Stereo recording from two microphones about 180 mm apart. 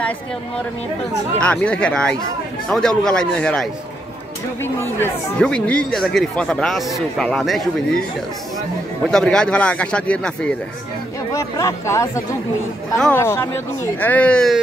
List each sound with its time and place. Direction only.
1.4 s speech: 5° left (ahead or behind)
5.0 s speech: 5° left (ahead or behind)
9.0 s speech: 5° left (ahead or behind)
11.3 s speech: 15° left (ahead or behind)
13.1 s speech: 15° left (ahead or behind)